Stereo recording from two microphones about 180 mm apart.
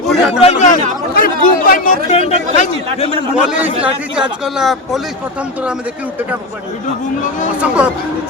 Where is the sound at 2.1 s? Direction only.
35° left (ahead or behind).